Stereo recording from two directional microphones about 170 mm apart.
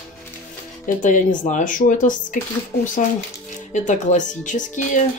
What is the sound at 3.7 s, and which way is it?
Speech, 45° left (ahead or behind).